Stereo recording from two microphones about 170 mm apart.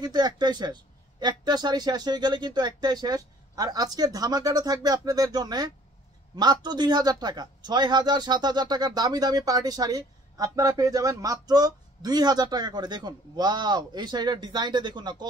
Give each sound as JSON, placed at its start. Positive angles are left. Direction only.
{"t": 0.0, "sound": "speech", "side_deg": -25}